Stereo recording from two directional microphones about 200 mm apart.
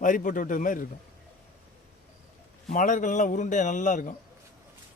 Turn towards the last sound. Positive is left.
turn(degrees=40)  # may be behind; listen again after turning